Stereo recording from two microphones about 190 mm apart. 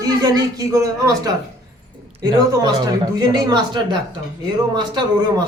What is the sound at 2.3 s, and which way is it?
Speech, 20° right (ahead or behind).